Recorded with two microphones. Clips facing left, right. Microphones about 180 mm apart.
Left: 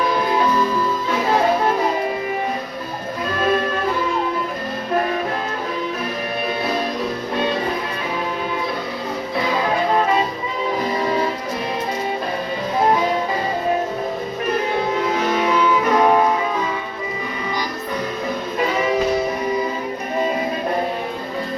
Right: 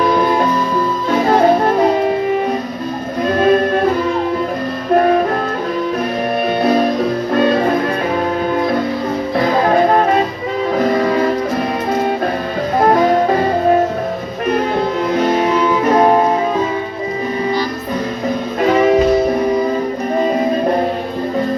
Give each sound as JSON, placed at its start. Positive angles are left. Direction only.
{"t": 1.3, "sound": "music", "side_deg": -45}
{"t": 3.3, "sound": "music", "side_deg": -45}
{"t": 4.9, "sound": "music", "side_deg": -50}
{"t": 6.6, "sound": "music", "side_deg": -50}
{"t": 9.4, "sound": "music", "side_deg": -50}
{"t": 12.7, "sound": "music", "side_deg": -55}
{"t": 15.3, "sound": "music", "side_deg": -40}
{"t": 18.6, "sound": "music", "side_deg": -55}